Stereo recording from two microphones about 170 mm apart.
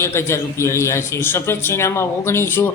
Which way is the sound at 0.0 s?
15° left (ahead or behind).